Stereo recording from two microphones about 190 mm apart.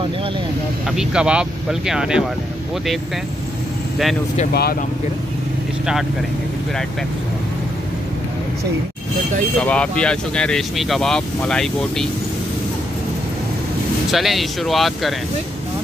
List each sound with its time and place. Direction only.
0.8 s speech: 5° right (ahead or behind)
4.5 s speech: 55° left (ahead or behind)
9.6 s speech: 5° left (ahead or behind)
14.1 s speech: centre (ahead or behind)